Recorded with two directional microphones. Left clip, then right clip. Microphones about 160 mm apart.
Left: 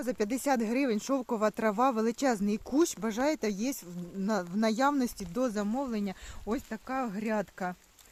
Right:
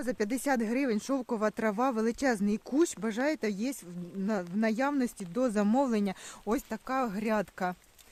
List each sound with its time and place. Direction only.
0.0 s speech: 10° right (ahead or behind)
5.5 s speech: 60° right (ahead or behind)
6.5 s speech: 30° right (ahead or behind)